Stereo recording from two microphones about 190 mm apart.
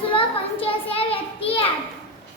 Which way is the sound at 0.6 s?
30° left (ahead or behind).